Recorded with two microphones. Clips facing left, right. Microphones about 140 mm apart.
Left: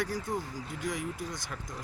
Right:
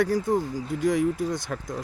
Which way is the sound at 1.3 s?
60° right (ahead or behind).